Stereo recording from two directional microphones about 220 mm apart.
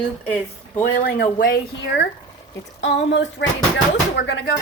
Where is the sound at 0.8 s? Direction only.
40° left (ahead or behind).